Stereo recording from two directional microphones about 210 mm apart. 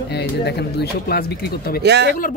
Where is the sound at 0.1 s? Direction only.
50° left (ahead or behind).